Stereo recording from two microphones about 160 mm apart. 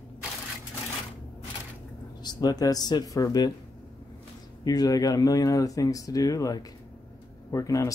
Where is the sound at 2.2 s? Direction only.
25° left (ahead or behind).